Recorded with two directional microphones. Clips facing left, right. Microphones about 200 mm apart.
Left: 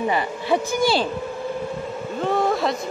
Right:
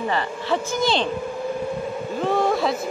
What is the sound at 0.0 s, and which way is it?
Speech, 15° left (ahead or behind).